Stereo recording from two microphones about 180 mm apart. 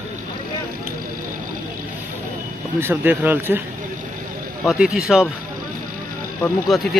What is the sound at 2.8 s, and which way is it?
Speech, 10° right (ahead or behind).